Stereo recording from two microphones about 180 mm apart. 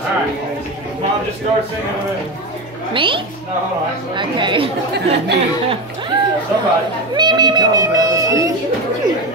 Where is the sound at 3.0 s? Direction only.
30° right (ahead or behind).